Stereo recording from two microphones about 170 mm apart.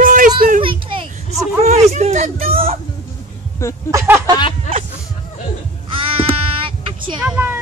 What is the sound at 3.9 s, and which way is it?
Speech, 10° right (ahead or behind).